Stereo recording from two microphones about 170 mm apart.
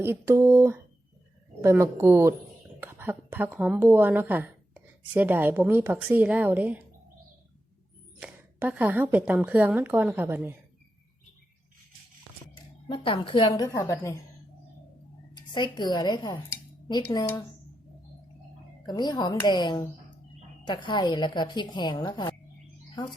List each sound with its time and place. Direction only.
0.0 s a woman's voice: 15° right (ahead or behind)
8.2 s a woman's voice: 10° right (ahead or behind)
12.9 s speech: 30° left (ahead or behind)
15.4 s speech: 25° left (ahead or behind)
18.9 s speech: 25° left (ahead or behind)